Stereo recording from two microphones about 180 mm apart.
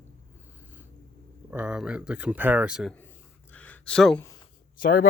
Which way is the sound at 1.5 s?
5° right (ahead or behind).